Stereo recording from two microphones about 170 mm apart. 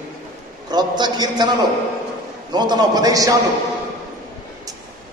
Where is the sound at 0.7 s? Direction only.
25° right (ahead or behind).